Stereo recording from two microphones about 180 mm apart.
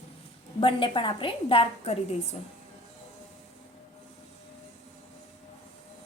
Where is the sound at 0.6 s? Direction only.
30° left (ahead or behind).